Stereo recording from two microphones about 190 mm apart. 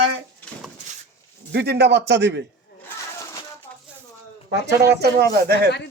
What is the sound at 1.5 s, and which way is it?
Speech, 60° right (ahead or behind).